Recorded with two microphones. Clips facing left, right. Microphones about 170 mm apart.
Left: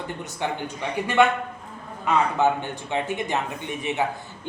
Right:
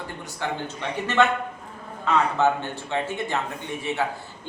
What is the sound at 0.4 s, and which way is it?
Speech, 20° left (ahead or behind).